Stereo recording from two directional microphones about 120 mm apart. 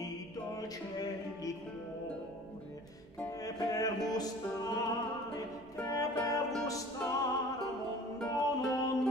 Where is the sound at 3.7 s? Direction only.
30° left (ahead or behind).